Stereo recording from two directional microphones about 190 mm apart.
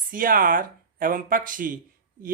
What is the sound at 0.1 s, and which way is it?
Speech, 45° right (ahead or behind).